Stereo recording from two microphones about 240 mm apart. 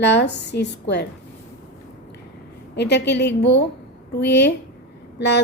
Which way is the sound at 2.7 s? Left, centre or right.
Left.